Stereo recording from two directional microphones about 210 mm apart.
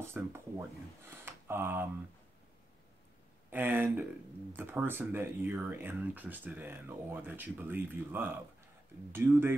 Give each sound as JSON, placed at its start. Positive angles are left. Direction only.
{"t": 0.0, "sound": "speech", "side_deg": -10}
{"t": 3.4, "sound": "speech", "side_deg": -10}